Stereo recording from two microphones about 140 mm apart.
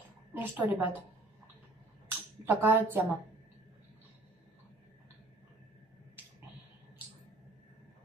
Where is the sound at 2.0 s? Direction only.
15° right (ahead or behind).